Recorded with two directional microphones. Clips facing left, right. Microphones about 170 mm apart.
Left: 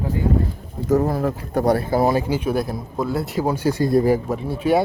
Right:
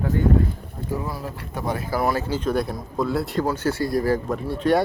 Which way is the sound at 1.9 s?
25° left (ahead or behind).